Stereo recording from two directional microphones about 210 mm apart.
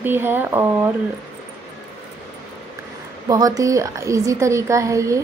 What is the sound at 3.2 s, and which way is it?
Speech, 15° right (ahead or behind).